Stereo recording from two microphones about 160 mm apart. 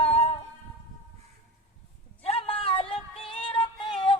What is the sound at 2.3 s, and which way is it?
Music, 35° left (ahead or behind).